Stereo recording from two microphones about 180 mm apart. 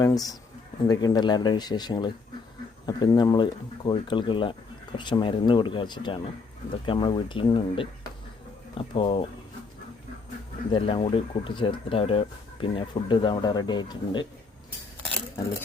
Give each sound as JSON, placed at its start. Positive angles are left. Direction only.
{"t": 0.0, "sound": "speech", "side_deg": 20}
{"t": 10.7, "sound": "speech", "side_deg": 30}